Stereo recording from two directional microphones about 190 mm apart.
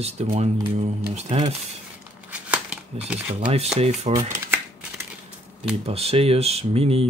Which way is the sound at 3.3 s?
35° right (ahead or behind).